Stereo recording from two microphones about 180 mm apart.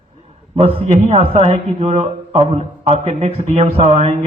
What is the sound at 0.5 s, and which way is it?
A man's voice, 40° right (ahead or behind).